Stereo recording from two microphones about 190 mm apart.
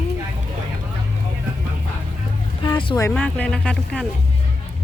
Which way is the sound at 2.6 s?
25° left (ahead or behind).